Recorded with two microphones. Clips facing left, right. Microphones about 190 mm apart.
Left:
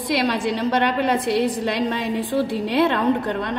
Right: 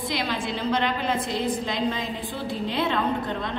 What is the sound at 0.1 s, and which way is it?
A woman's voice, 70° left (ahead or behind).